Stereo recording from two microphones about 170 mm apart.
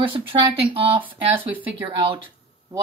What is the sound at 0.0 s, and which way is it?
Speech, 30° right (ahead or behind).